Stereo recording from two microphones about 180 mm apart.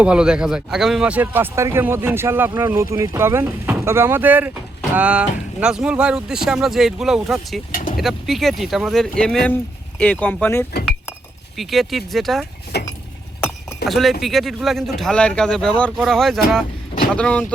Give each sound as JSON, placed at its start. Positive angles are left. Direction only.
{"t": 0.0, "sound": "speech", "side_deg": -5}
{"t": 7.7, "sound": "vehicle", "side_deg": 50}
{"t": 7.9, "sound": "speech", "side_deg": 0}
{"t": 11.5, "sound": "speech", "side_deg": 0}
{"t": 12.7, "sound": "a sound", "side_deg": 65}
{"t": 13.8, "sound": "speech", "side_deg": 0}